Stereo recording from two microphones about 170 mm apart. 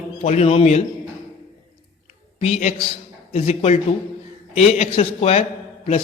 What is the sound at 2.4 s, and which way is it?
A man's voice, 40° left (ahead or behind).